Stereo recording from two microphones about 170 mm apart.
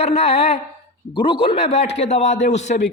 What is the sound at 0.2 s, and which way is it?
A man's voice, 35° left (ahead or behind).